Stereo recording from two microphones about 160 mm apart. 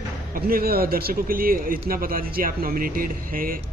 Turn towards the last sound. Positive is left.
turn(degrees=-60)  # may be behind; listen again after turning